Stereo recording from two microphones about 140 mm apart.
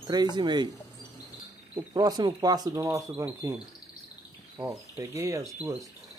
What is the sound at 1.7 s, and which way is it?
Speech, 25° right (ahead or behind).